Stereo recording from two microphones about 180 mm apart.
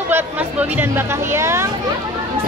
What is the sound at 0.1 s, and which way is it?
Speech, 10° right (ahead or behind).